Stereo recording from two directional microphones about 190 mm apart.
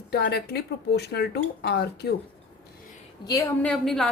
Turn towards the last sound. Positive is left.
turn(degrees=5)  # may be behind; listen again after turning